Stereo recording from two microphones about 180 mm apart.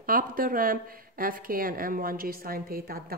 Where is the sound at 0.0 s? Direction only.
50° right (ahead or behind).